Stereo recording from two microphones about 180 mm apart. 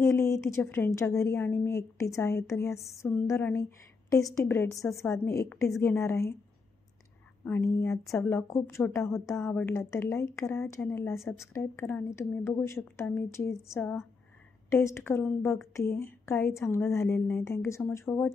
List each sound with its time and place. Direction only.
0.0 s a woman's voice: 15° left (ahead or behind)
8.1 s a woman's voice: 10° left (ahead or behind)